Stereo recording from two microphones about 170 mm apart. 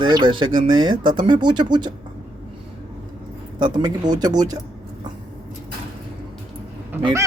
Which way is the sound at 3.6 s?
25° right (ahead or behind).